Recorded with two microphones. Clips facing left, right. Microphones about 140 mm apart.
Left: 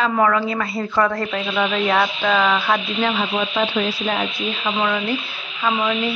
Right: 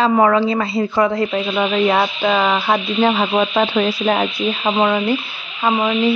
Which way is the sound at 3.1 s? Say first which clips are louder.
Right 5 dB; 45° right (ahead or behind).